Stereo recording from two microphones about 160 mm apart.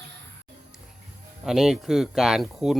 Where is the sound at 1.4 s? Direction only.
5° right (ahead or behind).